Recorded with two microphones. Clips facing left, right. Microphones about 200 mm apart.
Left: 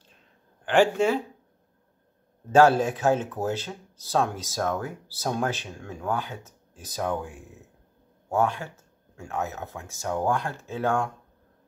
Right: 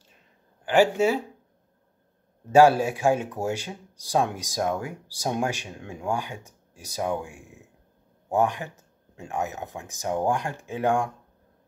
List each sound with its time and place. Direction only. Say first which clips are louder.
0.7 s speech: right 1 dB; 10° right (ahead or behind)
2.5 s speech: right 1 dB; 10° right (ahead or behind)